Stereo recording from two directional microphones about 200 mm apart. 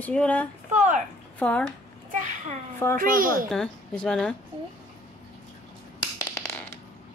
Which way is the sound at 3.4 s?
5° left (ahead or behind).